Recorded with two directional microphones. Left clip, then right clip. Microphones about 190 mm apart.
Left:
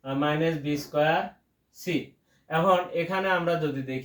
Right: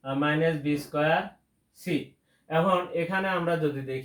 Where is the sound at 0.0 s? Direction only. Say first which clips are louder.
Even; centre (ahead or behind).